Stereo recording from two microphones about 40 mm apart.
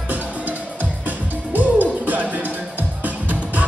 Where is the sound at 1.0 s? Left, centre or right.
Right.